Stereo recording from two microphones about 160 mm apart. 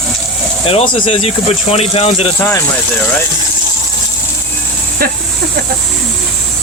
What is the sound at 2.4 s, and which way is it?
Speech, 15° left (ahead or behind).